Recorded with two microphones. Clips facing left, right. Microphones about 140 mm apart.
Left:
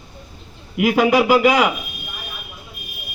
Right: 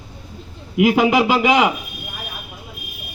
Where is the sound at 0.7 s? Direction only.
20° right (ahead or behind).